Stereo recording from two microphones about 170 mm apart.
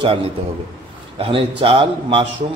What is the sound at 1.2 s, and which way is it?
A man's voice, 35° right (ahead or behind).